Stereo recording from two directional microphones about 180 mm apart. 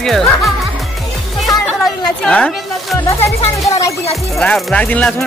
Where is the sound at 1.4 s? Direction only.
5° left (ahead or behind).